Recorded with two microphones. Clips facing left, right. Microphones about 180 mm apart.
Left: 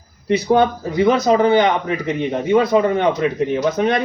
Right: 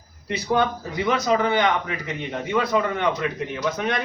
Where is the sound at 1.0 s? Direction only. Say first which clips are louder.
Left 7 dB; 35° left (ahead or behind).